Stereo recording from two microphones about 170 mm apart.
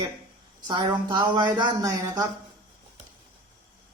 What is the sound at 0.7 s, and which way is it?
Speech, 25° right (ahead or behind).